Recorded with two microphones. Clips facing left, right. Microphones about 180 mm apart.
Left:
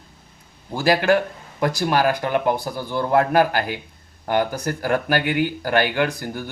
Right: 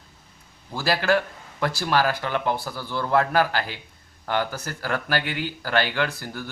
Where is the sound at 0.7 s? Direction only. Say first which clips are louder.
Left 5 dB; 15° left (ahead or behind).